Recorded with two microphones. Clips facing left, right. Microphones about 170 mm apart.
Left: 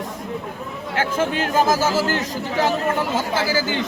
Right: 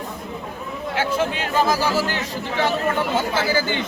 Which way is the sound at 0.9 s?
45° left (ahead or behind).